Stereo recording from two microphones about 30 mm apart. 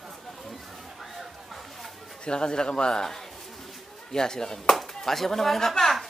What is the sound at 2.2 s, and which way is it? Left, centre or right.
Speech, left.